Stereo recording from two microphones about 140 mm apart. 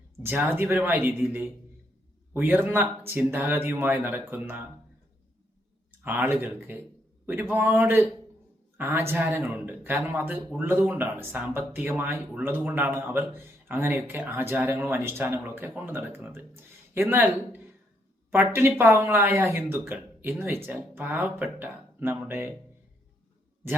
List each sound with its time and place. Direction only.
0.2 s speech: 15° right (ahead or behind)
2.3 s speech: 15° right (ahead or behind)
6.0 s speech: 15° right (ahead or behind)